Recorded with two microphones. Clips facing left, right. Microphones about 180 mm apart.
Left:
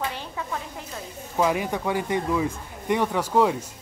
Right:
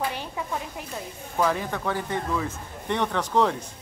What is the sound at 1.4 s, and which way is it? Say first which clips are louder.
Speech: left 2 dB; 15° left (ahead or behind).